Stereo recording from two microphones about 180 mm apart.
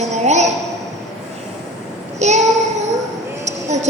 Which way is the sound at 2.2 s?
40° right (ahead or behind).